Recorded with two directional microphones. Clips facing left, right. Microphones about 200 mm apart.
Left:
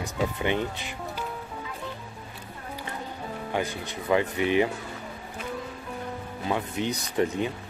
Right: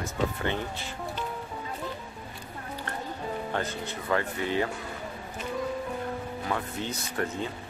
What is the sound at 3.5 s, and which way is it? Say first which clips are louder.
Speech: left 2 dB; 15° left (ahead or behind).